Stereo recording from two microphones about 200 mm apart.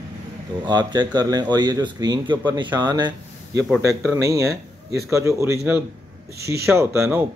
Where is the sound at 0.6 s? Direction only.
20° right (ahead or behind).